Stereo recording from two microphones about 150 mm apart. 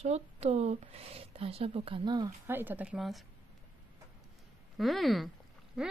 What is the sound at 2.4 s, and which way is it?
Speech, 15° right (ahead or behind).